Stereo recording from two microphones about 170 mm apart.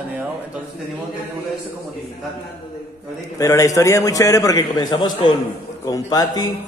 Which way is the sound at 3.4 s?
20° left (ahead or behind).